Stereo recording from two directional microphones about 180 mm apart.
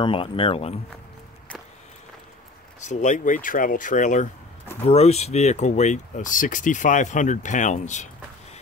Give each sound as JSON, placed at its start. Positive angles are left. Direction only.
{"t": 0.0, "sound": "speech", "side_deg": 30}
{"t": 2.8, "sound": "speech", "side_deg": 40}